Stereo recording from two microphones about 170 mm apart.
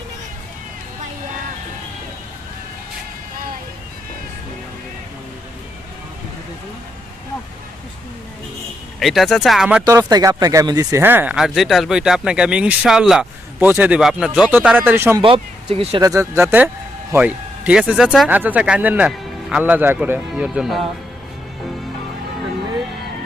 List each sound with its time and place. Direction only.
9.0 s speech: centre (ahead or behind)
9.8 s speech: 20° right (ahead or behind)
15.2 s speech: 35° right (ahead or behind)
16.0 s speech: 15° right (ahead or behind)